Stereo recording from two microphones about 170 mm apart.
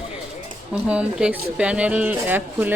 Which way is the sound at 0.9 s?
5° right (ahead or behind).